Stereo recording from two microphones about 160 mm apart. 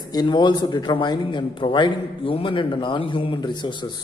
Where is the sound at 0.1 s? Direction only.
25° left (ahead or behind).